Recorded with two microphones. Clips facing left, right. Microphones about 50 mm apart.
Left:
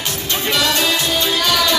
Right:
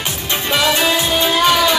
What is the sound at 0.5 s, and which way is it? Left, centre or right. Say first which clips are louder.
Music: right 3 dB; centre.